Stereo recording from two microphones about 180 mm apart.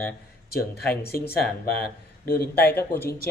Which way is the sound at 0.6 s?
55° left (ahead or behind).